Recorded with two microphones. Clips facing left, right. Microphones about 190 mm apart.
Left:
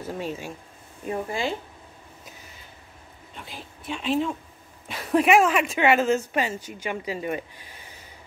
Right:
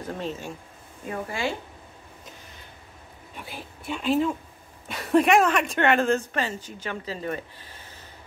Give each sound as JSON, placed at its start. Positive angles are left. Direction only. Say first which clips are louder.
{"t": 0.0, "sound": "speech", "louder": "left 1 dB", "side_deg": 10}
{"t": 1.0, "sound": "speech", "louder": "left 2 dB", "side_deg": 20}
{"t": 3.3, "sound": "speech", "louder": "right 2 dB", "side_deg": -5}